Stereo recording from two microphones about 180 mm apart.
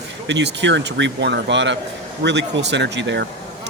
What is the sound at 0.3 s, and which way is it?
Speech, 80° right.